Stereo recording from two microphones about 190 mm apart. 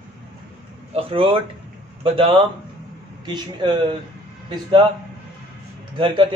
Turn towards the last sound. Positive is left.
turn(degrees=-25)  # may be behind; listen again after turning